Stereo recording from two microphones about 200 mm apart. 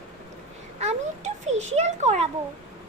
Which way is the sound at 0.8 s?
35° right (ahead or behind).